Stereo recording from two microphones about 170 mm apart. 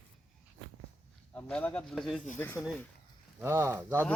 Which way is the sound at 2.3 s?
10° left (ahead or behind).